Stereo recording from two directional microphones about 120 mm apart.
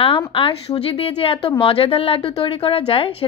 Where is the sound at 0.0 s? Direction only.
50° left (ahead or behind).